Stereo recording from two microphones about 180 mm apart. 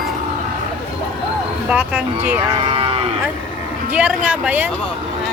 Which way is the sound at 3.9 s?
5° right (ahead or behind).